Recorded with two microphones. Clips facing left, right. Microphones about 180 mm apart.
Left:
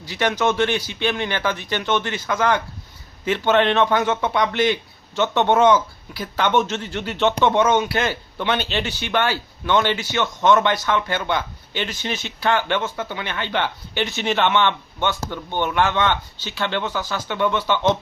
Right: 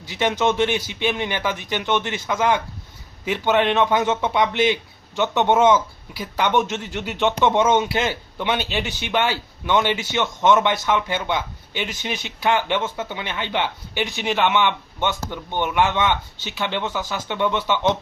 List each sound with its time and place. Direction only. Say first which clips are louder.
0.0 s a man's voice: even; 20° right (ahead or behind)